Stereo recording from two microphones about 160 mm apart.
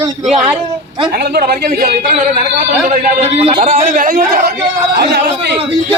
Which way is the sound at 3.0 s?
45° right (ahead or behind).